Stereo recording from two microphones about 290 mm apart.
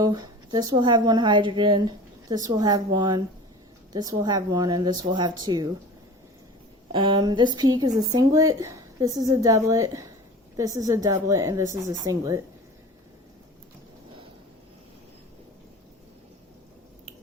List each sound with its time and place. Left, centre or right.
0.0 s a woman's voice: centre
6.9 s a woman's voice: centre